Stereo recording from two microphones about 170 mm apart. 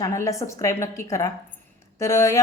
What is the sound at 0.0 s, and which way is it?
A woman's voice, 15° left (ahead or behind).